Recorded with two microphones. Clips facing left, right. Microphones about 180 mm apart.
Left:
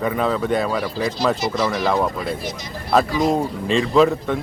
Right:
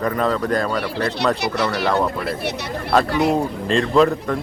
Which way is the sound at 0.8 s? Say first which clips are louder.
Even; 70° right (ahead or behind).